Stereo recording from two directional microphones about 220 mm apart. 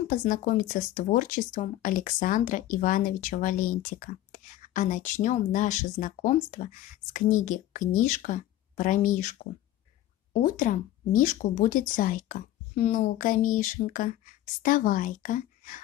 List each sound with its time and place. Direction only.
0.1 s speech: 35° left (ahead or behind)